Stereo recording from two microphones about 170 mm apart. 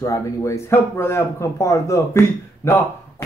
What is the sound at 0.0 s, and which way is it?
A man's voice, 20° left (ahead or behind).